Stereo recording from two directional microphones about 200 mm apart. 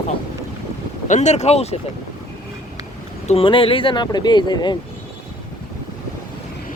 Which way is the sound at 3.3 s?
25° left (ahead or behind).